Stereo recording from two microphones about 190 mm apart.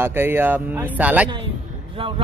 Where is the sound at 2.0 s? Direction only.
30° right (ahead or behind).